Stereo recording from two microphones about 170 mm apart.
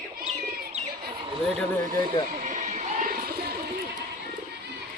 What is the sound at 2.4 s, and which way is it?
Bird, 45° right (ahead or behind).